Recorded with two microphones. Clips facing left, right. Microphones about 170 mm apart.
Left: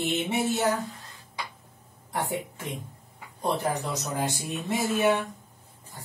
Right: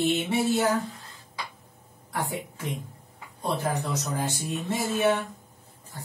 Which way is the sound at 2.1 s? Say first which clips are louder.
Left 1 dB; 20° left (ahead or behind).